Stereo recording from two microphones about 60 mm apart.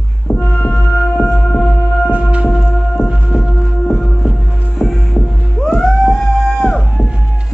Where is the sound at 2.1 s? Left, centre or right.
Right.